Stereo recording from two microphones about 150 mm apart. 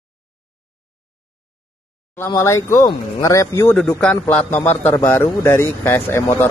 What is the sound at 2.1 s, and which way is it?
Speech, 20° left (ahead or behind).